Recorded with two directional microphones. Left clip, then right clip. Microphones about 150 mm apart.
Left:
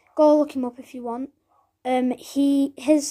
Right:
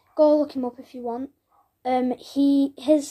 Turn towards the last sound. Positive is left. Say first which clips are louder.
# even
turn(degrees=25)  # may be behind; listen again after turning